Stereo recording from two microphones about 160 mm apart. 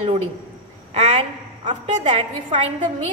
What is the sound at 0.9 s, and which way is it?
Speech, 45° right (ahead or behind).